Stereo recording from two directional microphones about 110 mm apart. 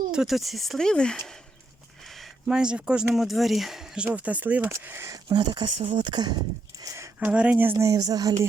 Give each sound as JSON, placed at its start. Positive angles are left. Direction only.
{"t": 0.1, "sound": "speech", "side_deg": -5}
{"t": 5.3, "sound": "speech", "side_deg": -40}
{"t": 6.7, "sound": "a sound", "side_deg": -30}
{"t": 7.3, "sound": "speech", "side_deg": -10}